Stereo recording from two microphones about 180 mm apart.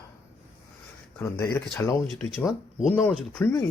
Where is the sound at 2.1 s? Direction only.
Centre (ahead or behind).